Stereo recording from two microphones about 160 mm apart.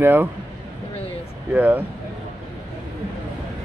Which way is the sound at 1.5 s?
10° right (ahead or behind).